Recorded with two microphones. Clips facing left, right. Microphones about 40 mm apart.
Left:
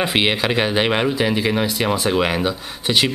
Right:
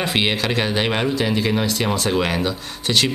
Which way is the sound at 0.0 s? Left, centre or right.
Centre.